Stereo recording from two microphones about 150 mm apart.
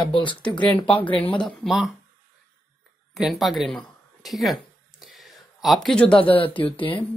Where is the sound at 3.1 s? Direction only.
Centre (ahead or behind).